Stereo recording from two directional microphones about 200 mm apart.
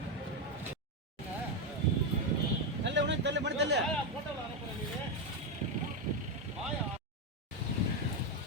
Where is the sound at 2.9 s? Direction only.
60° right (ahead or behind).